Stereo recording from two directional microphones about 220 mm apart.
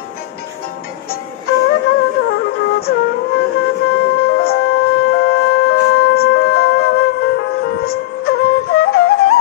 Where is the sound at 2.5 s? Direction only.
45° left (ahead or behind).